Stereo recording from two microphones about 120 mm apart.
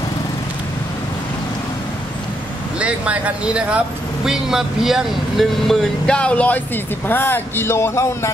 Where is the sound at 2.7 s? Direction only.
10° right (ahead or behind).